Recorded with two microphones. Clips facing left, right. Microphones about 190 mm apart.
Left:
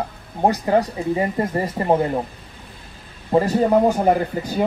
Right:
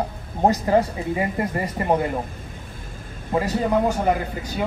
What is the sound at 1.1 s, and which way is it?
Speech, 30° left (ahead or behind).